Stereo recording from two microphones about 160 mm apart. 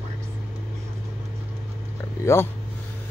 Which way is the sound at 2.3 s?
15° left (ahead or behind).